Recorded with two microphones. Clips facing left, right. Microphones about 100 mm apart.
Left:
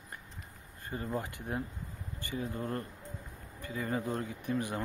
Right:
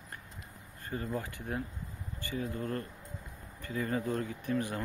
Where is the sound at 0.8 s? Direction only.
20° left (ahead or behind).